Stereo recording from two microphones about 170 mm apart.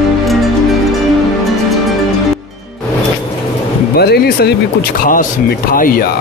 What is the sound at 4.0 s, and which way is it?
Speech, 70° left (ahead or behind).